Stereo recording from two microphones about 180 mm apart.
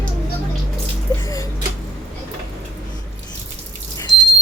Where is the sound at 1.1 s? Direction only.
20° left (ahead or behind).